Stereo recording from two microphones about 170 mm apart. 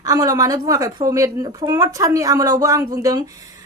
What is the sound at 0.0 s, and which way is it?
Speech, 20° right (ahead or behind).